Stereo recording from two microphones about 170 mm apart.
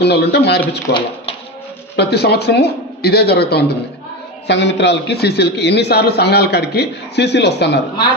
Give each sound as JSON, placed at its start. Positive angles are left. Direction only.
{"t": 0.0, "sound": "a man's voice", "side_deg": 75}
{"t": 0.9, "sound": "speech", "side_deg": 90}
{"t": 2.0, "sound": "a man's voice", "side_deg": 70}
{"t": 4.4, "sound": "a man's voice", "side_deg": 90}